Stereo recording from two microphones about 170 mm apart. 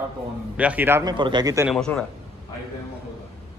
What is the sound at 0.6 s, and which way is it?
Speech, 10° right (ahead or behind).